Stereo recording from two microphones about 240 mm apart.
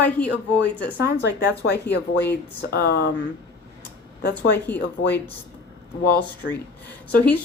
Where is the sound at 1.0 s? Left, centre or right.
Left.